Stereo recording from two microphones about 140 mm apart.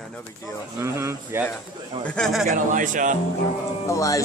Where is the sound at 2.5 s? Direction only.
70° right (ahead or behind).